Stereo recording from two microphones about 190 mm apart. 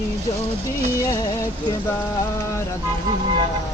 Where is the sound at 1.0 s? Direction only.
20° left (ahead or behind).